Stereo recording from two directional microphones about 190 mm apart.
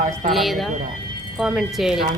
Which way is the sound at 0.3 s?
Centre (ahead or behind).